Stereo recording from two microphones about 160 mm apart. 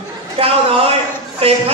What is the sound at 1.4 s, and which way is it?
Speech, 40° right (ahead or behind).